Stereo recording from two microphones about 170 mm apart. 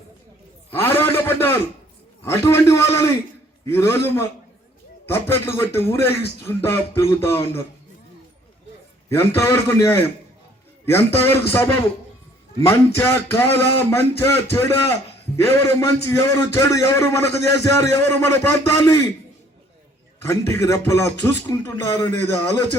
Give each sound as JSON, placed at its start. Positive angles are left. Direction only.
{"t": 0.7, "sound": "a sound", "side_deg": 15}
{"t": 2.2, "sound": "a man's voice", "side_deg": 15}
{"t": 9.0, "sound": "a man's voice", "side_deg": 15}
{"t": 20.2, "sound": "a man's voice", "side_deg": 15}